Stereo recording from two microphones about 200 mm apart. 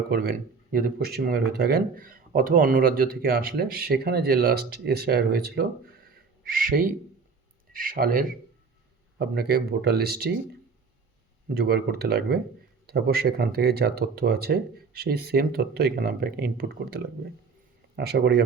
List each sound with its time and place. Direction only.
0.1 s speech: 50° right (ahead or behind)
6.1 s duck: 45° right (ahead or behind)
7.7 s speech: 45° right (ahead or behind)
11.4 s speech: 50° right (ahead or behind)